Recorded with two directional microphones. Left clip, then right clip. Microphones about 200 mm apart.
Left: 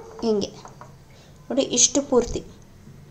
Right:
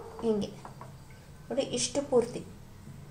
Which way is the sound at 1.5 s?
40° left (ahead or behind).